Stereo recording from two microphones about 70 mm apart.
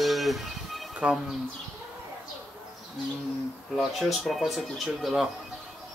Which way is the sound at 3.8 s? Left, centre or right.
Centre.